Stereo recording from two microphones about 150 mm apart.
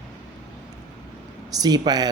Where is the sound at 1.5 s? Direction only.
25° right (ahead or behind).